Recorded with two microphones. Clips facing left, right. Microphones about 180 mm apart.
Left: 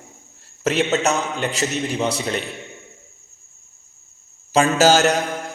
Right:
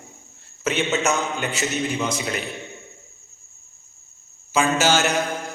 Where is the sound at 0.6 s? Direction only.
40° left (ahead or behind).